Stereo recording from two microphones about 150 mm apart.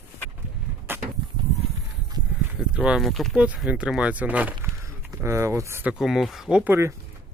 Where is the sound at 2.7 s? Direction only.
5° right (ahead or behind).